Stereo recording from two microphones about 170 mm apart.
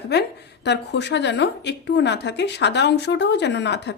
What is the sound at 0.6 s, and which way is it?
A woman's voice, 90° left.